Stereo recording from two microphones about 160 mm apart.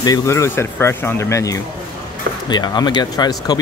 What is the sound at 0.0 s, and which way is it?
Speech, 20° left (ahead or behind).